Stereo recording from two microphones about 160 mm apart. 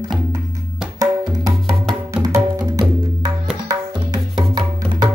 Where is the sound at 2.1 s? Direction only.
20° right (ahead or behind).